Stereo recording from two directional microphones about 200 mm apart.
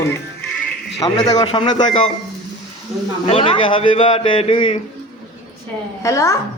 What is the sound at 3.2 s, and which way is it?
A man's voice, 30° left (ahead or behind).